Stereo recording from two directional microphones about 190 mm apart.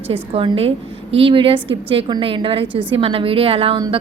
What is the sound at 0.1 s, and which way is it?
A woman's voice, 30° right (ahead or behind).